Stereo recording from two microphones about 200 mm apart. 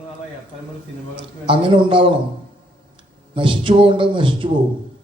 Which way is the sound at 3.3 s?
25° right (ahead or behind).